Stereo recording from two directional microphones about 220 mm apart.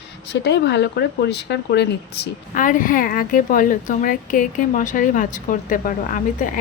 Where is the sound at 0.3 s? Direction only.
50° left (ahead or behind).